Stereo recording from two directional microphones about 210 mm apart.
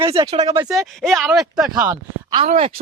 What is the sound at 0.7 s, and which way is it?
Speech, centre (ahead or behind).